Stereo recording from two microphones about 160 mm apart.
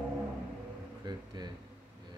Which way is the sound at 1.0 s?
25° right (ahead or behind).